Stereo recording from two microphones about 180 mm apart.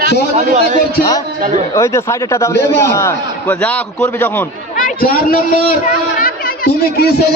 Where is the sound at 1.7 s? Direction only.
15° left (ahead or behind).